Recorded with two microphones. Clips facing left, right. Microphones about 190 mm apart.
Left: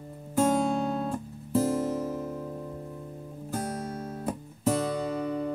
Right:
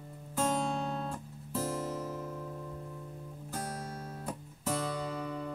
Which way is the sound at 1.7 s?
25° left (ahead or behind).